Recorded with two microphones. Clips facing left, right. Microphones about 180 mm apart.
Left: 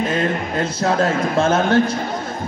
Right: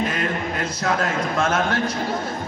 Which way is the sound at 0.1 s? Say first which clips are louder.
Left 5 dB; 30° left (ahead or behind).